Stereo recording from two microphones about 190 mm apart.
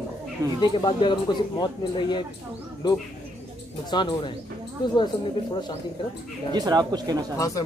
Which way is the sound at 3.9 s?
25° left (ahead or behind).